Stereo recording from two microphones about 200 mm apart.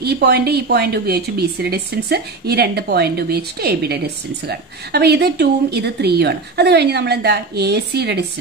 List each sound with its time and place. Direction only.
0.0 s a woman's voice: 55° right (ahead or behind)